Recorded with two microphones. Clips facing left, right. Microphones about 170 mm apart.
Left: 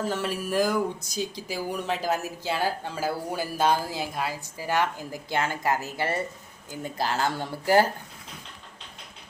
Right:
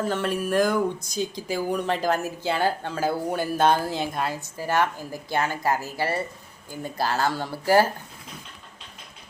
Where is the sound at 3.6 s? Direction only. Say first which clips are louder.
Right 3 dB; 55° right (ahead or behind).